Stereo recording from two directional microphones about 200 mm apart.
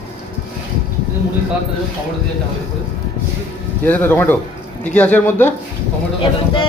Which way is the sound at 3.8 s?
10° left (ahead or behind).